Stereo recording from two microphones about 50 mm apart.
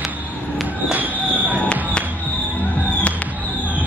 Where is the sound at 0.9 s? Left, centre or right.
Right.